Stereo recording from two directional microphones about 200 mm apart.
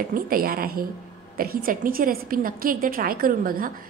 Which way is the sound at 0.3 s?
45° right (ahead or behind).